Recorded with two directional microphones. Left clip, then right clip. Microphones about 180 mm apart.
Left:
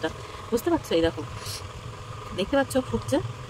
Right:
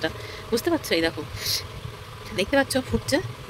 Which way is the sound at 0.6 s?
15° right (ahead or behind).